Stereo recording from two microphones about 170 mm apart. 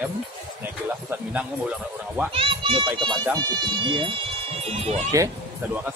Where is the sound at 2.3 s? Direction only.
35° right (ahead or behind).